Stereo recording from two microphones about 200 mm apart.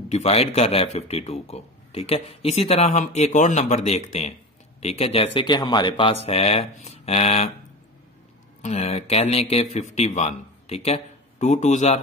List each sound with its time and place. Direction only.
0.1 s speech: 30° left (ahead or behind)
8.6 s speech: 30° left (ahead or behind)